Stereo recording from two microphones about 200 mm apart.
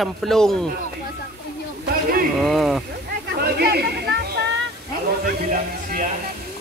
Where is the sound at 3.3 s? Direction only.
55° right (ahead or behind).